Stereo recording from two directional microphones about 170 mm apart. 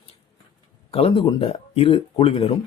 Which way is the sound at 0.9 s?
35° left (ahead or behind).